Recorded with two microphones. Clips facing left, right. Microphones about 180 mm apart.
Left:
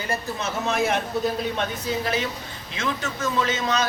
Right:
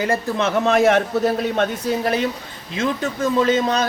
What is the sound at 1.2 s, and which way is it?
Speech, 55° right (ahead or behind).